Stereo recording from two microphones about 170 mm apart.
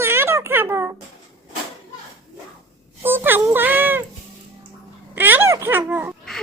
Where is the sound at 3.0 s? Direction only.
10° right (ahead or behind).